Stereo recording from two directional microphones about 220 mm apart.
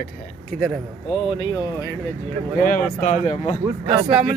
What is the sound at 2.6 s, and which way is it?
Speech, 35° left (ahead or behind).